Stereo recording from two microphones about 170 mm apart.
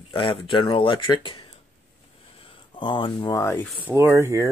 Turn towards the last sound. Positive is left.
turn(degrees=-15)  # may be behind; listen again after turning